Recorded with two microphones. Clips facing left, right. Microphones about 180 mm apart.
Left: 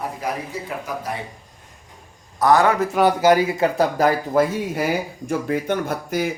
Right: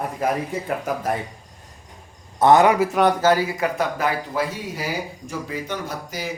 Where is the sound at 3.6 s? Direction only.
35° left (ahead or behind).